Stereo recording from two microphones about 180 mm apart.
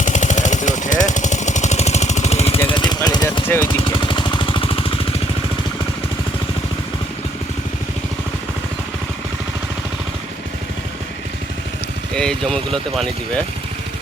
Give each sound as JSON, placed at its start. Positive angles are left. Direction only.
{"t": 0.0, "sound": "a sound", "side_deg": 40}
{"t": 2.6, "sound": "jackhammer", "side_deg": 25}
{"t": 3.8, "sound": "vehicle", "side_deg": 30}
{"t": 12.1, "sound": "speech", "side_deg": 5}